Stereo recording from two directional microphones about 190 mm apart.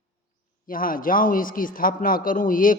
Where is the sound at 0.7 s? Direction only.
50° left (ahead or behind).